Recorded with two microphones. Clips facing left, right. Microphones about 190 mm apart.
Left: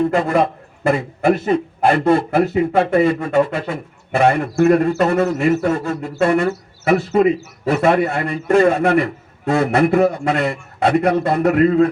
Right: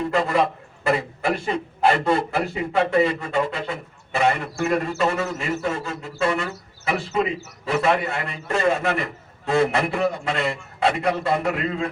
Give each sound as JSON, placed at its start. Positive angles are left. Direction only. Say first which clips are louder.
{"t": 0.0, "sound": "a man's voice", "louder": "left 5 dB", "side_deg": 55}